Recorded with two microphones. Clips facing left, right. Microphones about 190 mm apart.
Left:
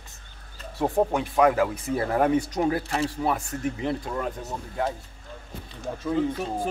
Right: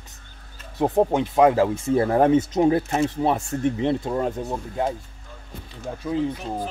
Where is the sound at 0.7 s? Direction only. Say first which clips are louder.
Right 4 dB; 20° right (ahead or behind).